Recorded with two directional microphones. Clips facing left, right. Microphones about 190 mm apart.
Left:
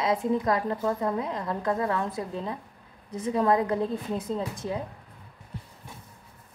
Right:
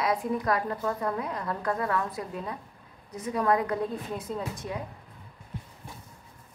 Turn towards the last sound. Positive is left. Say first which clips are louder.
# left 3 dB
turn(degrees=25)  # may be behind; listen again after turning